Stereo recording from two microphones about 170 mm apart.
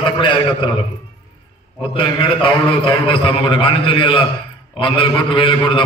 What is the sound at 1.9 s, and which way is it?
A man's voice, 30° left (ahead or behind).